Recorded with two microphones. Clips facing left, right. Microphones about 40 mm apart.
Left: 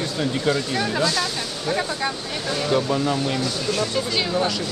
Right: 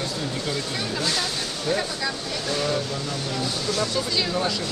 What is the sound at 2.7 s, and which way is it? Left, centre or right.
Speech, left.